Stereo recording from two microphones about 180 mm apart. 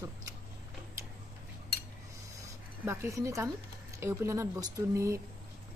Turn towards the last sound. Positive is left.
turn(degrees=-15)  # may be behind; listen again after turning